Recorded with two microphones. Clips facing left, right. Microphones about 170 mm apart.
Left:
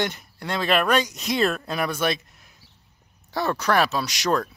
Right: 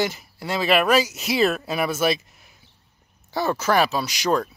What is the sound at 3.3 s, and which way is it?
Speech, centre (ahead or behind).